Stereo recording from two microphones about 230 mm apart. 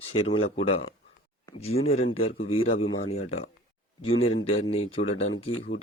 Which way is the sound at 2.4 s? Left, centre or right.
Left.